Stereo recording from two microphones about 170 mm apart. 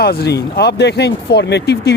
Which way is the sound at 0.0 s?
70° left (ahead or behind).